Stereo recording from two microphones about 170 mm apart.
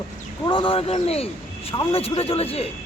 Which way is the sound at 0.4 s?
30° left (ahead or behind).